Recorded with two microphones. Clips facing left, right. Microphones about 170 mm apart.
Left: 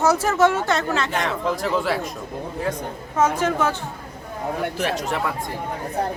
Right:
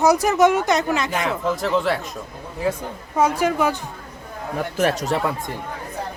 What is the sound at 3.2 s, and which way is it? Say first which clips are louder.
Speech: right 1 dB; 10° right (ahead or behind).